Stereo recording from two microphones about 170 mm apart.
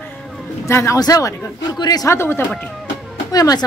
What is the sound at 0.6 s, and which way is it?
Speech, 15° left (ahead or behind).